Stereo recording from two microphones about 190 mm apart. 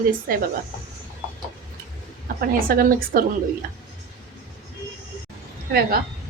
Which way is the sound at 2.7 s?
50° right (ahead or behind).